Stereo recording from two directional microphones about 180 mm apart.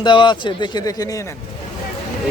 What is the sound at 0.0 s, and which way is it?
Speech, 25° left (ahead or behind).